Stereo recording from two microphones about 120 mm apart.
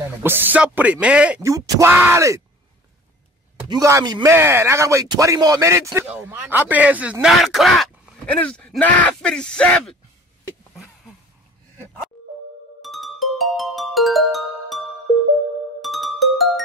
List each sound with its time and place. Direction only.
0.2 s speech: 15° right (ahead or behind)
1.4 s speech: 25° right (ahead or behind)
3.5 s speech: 35° right (ahead or behind)
4.3 s speech: 20° right (ahead or behind); by 9.9 s 10° left (ahead or behind)
12.8 s music: centre (ahead or behind)
15.8 s music: centre (ahead or behind)